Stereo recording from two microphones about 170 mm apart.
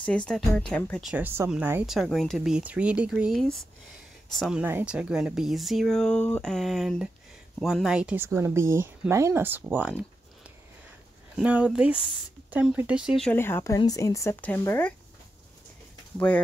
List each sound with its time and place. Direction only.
0.0 s speech: 5° left (ahead or behind)
1.0 s speech: 10° right (ahead or behind)
11.3 s speech: 5° right (ahead or behind)
13.3 s speech: 15° left (ahead or behind)